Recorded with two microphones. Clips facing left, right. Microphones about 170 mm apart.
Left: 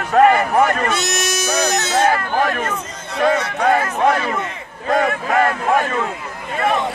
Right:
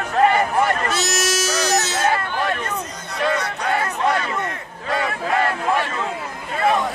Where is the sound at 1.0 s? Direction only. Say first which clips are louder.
Left 1 dB; 55° left (ahead or behind).